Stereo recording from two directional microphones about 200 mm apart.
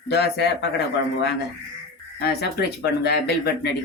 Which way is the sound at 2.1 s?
55° left (ahead or behind).